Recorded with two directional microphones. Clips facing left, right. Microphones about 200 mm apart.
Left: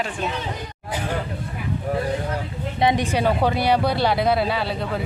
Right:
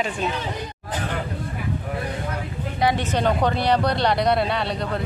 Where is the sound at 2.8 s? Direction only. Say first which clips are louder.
Left 2 dB; 20° left (ahead or behind).